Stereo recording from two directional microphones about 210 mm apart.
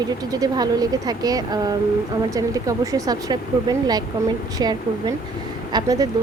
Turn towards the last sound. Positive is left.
turn(degrees=-15)  # may be behind; listen again after turning